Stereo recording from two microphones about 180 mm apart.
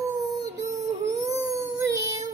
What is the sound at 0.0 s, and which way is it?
Dog, 20° right (ahead or behind).